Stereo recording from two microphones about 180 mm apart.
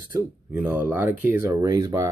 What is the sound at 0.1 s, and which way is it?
Speech, 10° right (ahead or behind).